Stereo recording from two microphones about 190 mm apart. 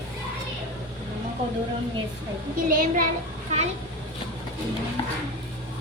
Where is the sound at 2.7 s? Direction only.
45° right (ahead or behind).